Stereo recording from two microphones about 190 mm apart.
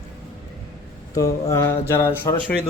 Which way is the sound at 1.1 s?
15° left (ahead or behind).